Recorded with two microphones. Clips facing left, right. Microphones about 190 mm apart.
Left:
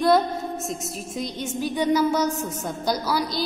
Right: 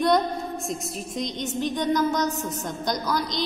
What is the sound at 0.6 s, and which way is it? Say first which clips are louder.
A woman's voice: even; 5° left (ahead or behind).